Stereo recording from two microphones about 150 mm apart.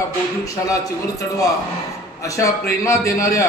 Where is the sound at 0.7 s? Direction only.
20° left (ahead or behind).